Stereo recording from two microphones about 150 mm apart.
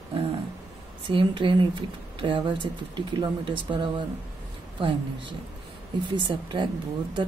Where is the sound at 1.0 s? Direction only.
35° right (ahead or behind).